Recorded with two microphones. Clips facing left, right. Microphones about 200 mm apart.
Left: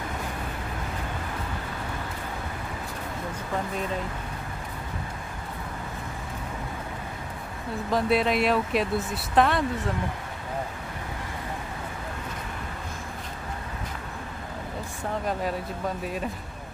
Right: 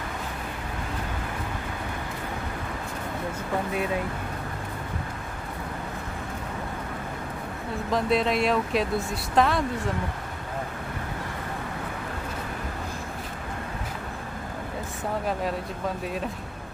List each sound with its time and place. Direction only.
7.9 s speech: centre (ahead or behind)